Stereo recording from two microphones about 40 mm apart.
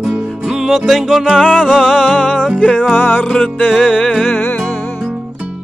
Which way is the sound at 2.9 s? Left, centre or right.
Left.